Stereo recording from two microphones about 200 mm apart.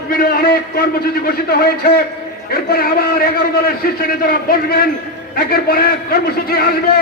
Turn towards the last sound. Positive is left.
turn(degrees=50)  # may be behind; listen again after turning